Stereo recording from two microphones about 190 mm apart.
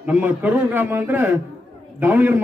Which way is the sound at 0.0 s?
10° right (ahead or behind).